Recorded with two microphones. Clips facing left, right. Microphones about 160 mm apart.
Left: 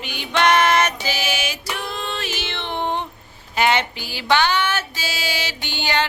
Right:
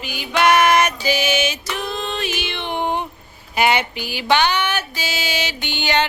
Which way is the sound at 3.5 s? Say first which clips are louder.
Right 1 dB; 10° right (ahead or behind).